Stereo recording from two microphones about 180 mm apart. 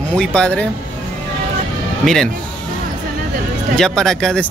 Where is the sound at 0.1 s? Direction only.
5° left (ahead or behind).